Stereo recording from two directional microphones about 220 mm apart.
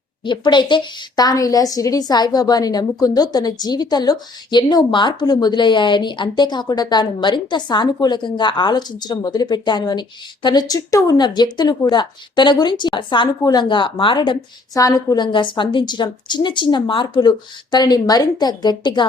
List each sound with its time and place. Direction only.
0.3 s a woman's voice: 20° left (ahead or behind)